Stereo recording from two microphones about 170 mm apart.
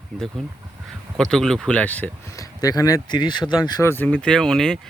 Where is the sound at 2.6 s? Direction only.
20° left (ahead or behind).